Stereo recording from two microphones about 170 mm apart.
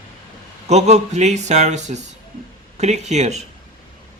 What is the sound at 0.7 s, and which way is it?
Speech, 40° right (ahead or behind).